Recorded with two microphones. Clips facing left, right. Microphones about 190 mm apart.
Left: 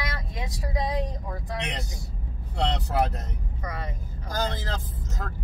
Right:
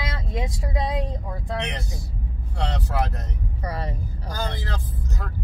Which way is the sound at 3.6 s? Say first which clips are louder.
Right 4 dB; 35° right (ahead or behind).